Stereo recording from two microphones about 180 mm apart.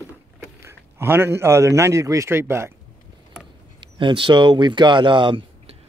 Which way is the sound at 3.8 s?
25° right (ahead or behind).